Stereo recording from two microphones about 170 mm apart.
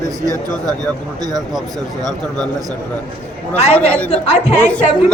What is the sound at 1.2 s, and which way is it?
Speech, 25° right (ahead or behind).